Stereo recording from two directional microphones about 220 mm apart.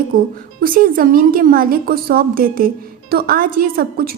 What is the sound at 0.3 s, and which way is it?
A woman's voice, 40° right (ahead or behind).